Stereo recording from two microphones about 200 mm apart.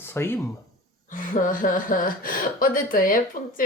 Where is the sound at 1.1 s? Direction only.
40° left (ahead or behind).